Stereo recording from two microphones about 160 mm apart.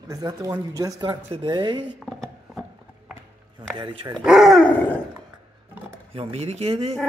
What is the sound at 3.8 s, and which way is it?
Speech, 30° right (ahead or behind).